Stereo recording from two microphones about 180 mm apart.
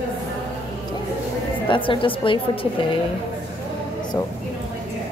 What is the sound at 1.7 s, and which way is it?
Speech, 30° left (ahead or behind).